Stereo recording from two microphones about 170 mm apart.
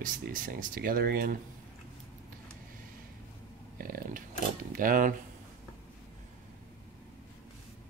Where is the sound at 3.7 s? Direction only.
60° right (ahead or behind).